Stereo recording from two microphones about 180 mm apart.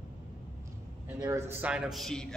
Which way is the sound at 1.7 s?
5° right (ahead or behind).